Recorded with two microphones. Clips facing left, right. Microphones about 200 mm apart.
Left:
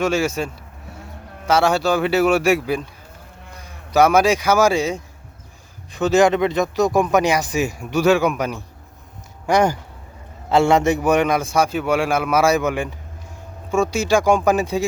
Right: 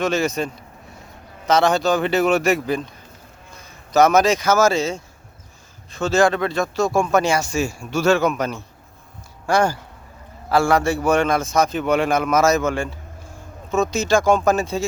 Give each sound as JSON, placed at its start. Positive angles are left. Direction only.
{"t": 0.0, "sound": "speech", "side_deg": 10}